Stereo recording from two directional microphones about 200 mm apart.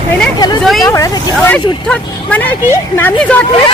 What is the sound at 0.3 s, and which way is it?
Speech, 20° left (ahead or behind).